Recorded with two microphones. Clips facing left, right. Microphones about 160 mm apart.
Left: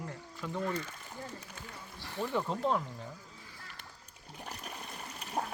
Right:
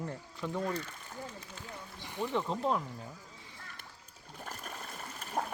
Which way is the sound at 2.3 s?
Centre (ahead or behind).